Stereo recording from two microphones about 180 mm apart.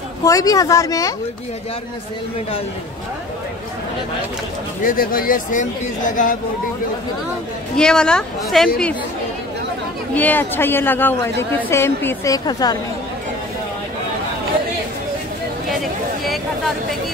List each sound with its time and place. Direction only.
0.2 s speech: 20° left (ahead or behind)
4.8 s speech: 55° left (ahead or behind)
7.7 s speech: 5° left (ahead or behind)
10.1 s a woman's voice: 10° left (ahead or behind)